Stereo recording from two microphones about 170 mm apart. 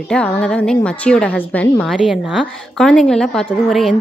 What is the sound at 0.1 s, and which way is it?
A woman's voice, 5° left (ahead or behind).